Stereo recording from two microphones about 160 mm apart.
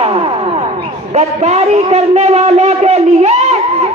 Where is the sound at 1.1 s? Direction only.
45° right (ahead or behind).